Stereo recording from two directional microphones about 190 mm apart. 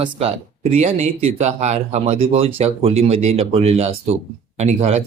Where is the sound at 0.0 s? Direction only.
30° right (ahead or behind).